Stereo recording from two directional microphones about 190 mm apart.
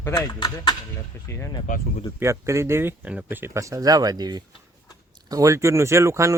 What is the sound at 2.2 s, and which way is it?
Speech, 15° right (ahead or behind).